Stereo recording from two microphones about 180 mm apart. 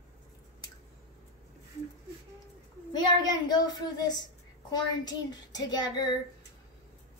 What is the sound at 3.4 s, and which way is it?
A woman's voice, 25° left (ahead or behind).